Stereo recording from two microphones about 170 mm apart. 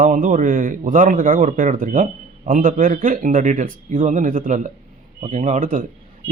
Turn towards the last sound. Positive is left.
turn(degrees=-50)  # may be behind; listen again after turning